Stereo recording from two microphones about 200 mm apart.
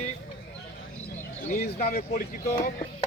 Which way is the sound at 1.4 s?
40° left (ahead or behind).